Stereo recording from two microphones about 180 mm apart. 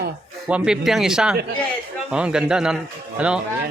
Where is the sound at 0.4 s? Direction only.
5° right (ahead or behind).